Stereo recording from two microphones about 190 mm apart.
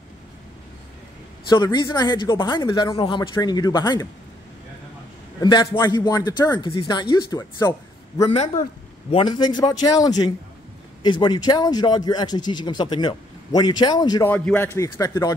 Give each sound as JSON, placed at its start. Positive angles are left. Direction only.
{"t": 1.5, "sound": "speech", "side_deg": 20}
{"t": 5.4, "sound": "speech", "side_deg": 25}
{"t": 8.3, "sound": "a man's voice", "side_deg": 35}
{"t": 9.1, "sound": "speech", "side_deg": 25}
{"t": 14.3, "sound": "a man's voice", "side_deg": 10}